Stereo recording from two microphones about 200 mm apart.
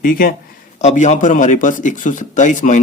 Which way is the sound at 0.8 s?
35° left (ahead or behind).